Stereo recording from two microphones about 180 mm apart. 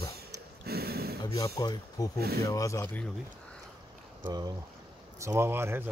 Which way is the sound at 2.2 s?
60° right (ahead or behind).